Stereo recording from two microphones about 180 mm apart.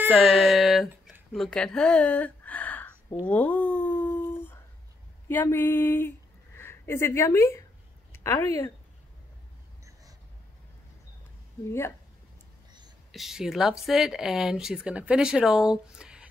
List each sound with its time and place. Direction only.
0.3 s speech: centre (ahead or behind)
1.3 s a sound: 5° left (ahead or behind)
3.3 s dog: 10° left (ahead or behind)
5.3 s speech: 10° left (ahead or behind)
13.1 s speech: centre (ahead or behind)